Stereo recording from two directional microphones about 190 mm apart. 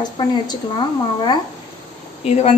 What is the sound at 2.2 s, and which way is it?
Speech, 35° left (ahead or behind).